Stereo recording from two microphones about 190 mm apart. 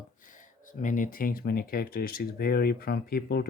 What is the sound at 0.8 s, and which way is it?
Speech, 45° left (ahead or behind).